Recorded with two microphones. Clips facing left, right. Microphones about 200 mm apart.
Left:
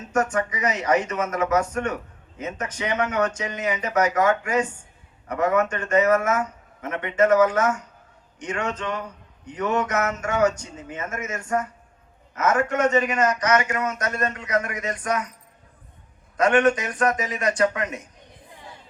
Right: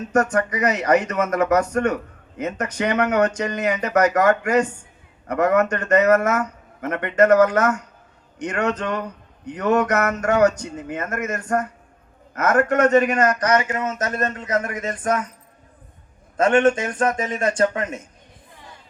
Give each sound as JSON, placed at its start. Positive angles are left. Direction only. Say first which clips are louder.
{"t": 0.3, "sound": "a man's voice", "louder": "right 4 dB", "side_deg": -65}
{"t": 13.4, "sound": "speech", "louder": "right 2 dB", "side_deg": -30}
{"t": 16.4, "sound": "a man's voice", "louder": "right 2 dB", "side_deg": -30}